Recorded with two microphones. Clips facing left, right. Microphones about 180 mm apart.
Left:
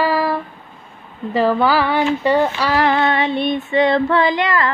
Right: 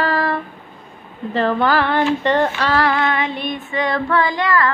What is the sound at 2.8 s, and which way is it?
Female singing, 30° left (ahead or behind).